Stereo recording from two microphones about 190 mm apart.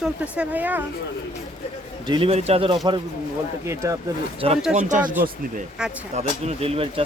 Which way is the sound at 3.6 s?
15° right (ahead or behind).